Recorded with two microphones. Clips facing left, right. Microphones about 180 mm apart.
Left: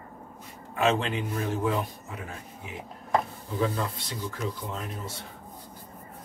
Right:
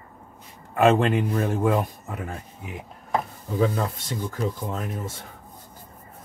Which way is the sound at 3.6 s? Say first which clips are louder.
Right 5 dB; 45° right (ahead or behind).